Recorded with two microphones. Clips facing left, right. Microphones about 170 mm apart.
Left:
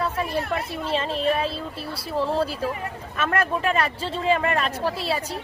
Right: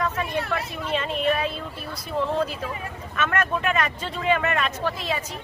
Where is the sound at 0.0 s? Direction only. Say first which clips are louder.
Left 1 dB; 30° left (ahead or behind).